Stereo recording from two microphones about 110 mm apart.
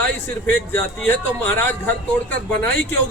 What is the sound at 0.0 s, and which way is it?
Speech, 20° left (ahead or behind).